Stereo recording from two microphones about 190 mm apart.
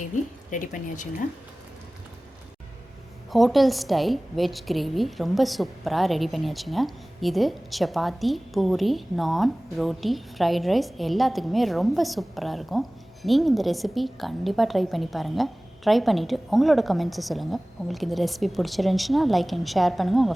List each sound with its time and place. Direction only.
0.5 s speech: 40° left (ahead or behind)
3.2 s a woman's voice: centre (ahead or behind)